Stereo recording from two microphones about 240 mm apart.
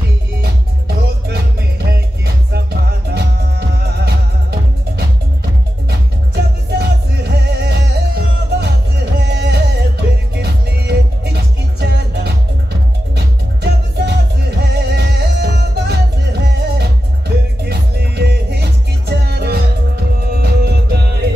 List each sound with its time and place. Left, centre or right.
1.9 s music: right